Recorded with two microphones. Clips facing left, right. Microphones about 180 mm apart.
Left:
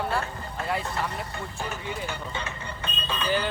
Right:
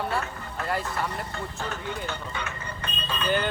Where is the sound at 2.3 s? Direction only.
25° left (ahead or behind).